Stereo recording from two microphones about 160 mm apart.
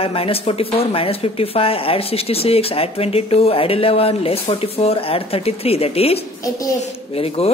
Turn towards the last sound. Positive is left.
turn(degrees=40)  # may be behind; listen again after turning